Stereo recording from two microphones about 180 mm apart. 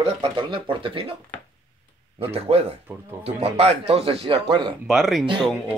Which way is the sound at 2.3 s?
35° right (ahead or behind).